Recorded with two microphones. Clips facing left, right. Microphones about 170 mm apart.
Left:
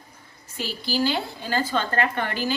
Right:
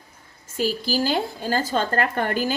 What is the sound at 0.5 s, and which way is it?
A woman's voice, 45° right (ahead or behind).